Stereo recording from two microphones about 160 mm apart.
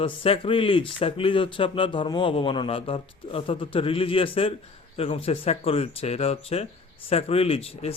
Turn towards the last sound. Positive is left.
turn(degrees=40)  # may be behind; listen again after turning